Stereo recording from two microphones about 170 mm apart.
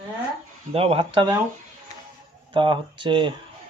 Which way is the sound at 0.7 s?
35° right (ahead or behind).